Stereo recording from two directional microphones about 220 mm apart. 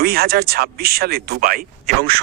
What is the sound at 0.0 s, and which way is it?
Speech, 45° right (ahead or behind).